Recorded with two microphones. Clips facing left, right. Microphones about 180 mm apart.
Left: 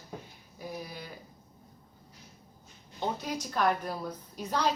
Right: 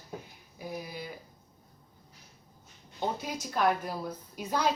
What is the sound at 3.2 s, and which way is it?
A woman's voice, 5° right (ahead or behind).